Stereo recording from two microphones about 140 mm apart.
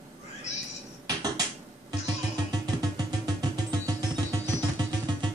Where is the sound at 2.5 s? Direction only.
25° right (ahead or behind).